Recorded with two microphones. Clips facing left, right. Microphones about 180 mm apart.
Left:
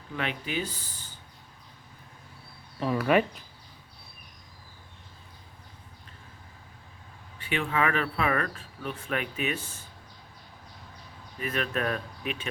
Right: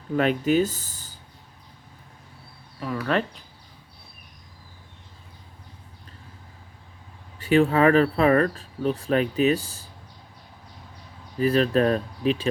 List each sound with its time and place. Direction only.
0.1 s speech: 40° right (ahead or behind)
3.0 s speech: 10° left (ahead or behind)
7.3 s speech: 40° right (ahead or behind)
11.3 s speech: 35° right (ahead or behind)